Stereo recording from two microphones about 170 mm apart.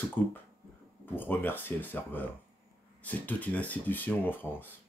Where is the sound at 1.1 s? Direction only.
10° left (ahead or behind).